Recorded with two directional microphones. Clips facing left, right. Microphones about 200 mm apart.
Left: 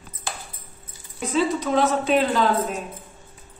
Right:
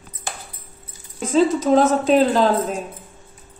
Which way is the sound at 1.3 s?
40° right (ahead or behind).